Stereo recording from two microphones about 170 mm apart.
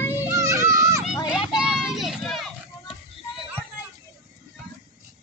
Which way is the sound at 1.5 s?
5° right (ahead or behind).